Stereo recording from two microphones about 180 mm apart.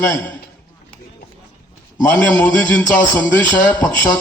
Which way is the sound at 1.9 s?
10° left (ahead or behind).